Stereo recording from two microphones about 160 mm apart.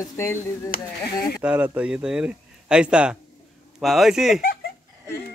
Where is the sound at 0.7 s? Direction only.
65° left (ahead or behind).